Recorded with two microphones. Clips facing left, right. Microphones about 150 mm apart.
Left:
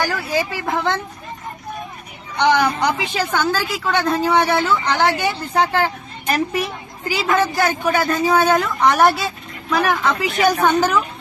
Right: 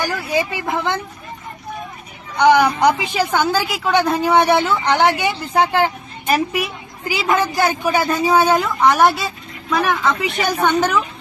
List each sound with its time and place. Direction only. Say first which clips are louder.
0.0 s a woman's voice: right 1 dB; 15° right (ahead or behind)
2.5 s a woman's voice: right 4 dB; 15° right (ahead or behind)